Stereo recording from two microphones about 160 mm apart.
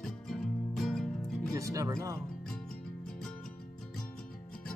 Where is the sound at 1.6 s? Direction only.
20° right (ahead or behind).